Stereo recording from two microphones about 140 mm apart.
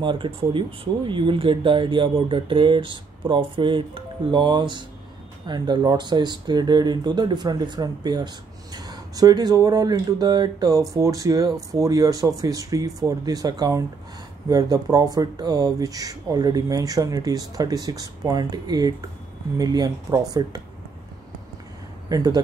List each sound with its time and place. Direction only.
0.0 s speech: 35° right (ahead or behind)
22.1 s speech: 25° right (ahead or behind)